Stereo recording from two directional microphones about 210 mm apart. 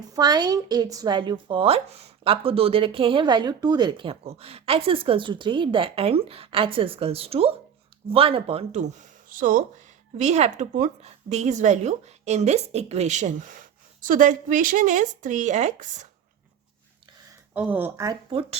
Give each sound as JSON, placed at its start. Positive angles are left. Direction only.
{"t": 0.1, "sound": "a woman's voice", "side_deg": -20}
{"t": 17.5, "sound": "speech", "side_deg": -5}